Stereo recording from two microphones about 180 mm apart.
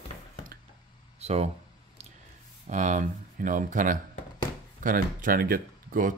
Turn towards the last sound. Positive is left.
turn(degrees=-50)  # may be behind; listen again after turning